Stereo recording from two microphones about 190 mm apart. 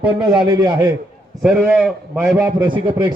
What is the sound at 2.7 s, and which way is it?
Speech, 25° right (ahead or behind).